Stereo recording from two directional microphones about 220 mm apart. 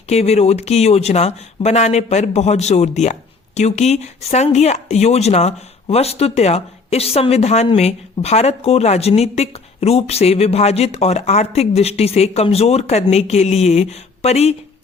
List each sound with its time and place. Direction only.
0.1 s speech: 30° left (ahead or behind)